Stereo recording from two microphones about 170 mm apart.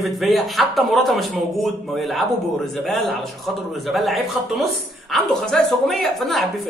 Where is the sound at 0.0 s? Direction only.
Centre (ahead or behind).